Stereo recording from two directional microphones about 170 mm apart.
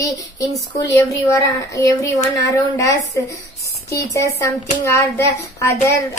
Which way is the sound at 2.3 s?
20° left (ahead or behind).